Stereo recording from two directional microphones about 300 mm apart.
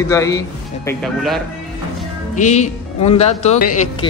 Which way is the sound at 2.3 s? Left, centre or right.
Left.